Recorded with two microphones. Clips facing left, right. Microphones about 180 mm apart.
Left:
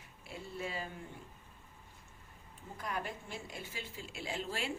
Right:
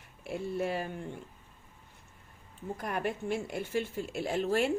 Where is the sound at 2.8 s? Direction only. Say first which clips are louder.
Right 6 dB; 60° right (ahead or behind).